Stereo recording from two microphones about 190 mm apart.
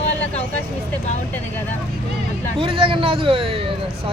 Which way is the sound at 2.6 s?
25° right (ahead or behind).